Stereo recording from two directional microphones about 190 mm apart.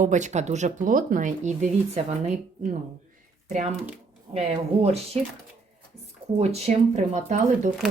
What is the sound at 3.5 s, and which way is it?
Speech, 40° right (ahead or behind).